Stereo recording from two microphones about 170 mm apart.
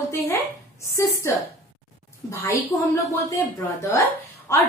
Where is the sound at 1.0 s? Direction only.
15° left (ahead or behind).